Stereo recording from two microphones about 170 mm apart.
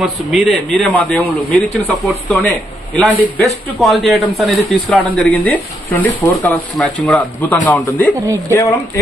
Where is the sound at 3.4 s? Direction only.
Centre (ahead or behind).